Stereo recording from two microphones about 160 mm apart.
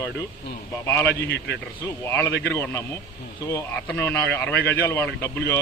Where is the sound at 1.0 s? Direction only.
90° left.